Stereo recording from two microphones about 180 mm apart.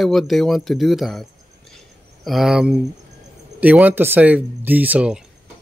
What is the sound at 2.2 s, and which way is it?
Speech, centre (ahead or behind).